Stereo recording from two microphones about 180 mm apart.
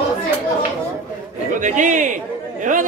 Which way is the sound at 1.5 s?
45° right (ahead or behind).